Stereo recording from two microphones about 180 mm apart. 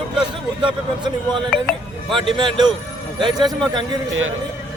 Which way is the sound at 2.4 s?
25° right (ahead or behind).